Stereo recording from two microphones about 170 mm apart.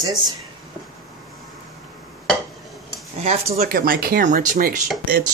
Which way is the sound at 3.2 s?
40° right (ahead or behind).